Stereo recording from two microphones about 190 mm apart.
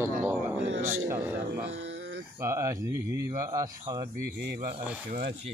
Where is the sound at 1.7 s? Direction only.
70° right (ahead or behind).